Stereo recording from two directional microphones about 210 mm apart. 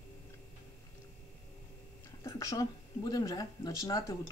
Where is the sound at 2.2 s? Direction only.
15° left (ahead or behind).